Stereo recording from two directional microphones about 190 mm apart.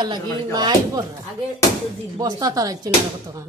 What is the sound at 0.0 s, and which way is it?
Speech, 20° right (ahead or behind).